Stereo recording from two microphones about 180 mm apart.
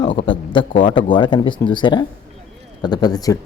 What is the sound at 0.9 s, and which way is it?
Speech, 25° left (ahead or behind).